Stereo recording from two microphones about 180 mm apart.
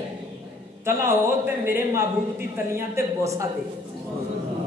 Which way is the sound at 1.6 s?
15° right (ahead or behind).